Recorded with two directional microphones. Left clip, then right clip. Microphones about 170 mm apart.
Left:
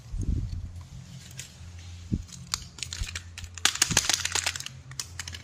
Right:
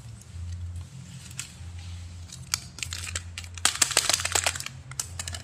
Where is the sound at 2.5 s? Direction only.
5° right (ahead or behind).